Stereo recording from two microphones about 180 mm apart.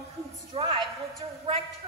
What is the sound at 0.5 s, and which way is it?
Speech, 30° right (ahead or behind).